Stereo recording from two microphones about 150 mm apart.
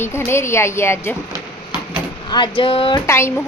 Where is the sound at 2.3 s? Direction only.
30° left (ahead or behind).